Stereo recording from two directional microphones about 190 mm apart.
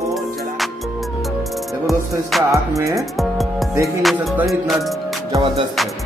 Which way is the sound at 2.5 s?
15° right (ahead or behind).